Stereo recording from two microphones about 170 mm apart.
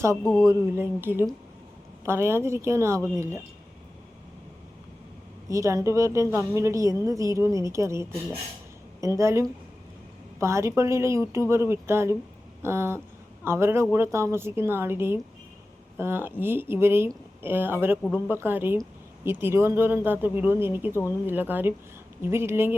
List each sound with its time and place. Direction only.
0.2 s speech: 5° left (ahead or behind)
0.4 s a woman's voice: 15° right (ahead or behind)
5.5 s a woman's voice: 20° right (ahead or behind)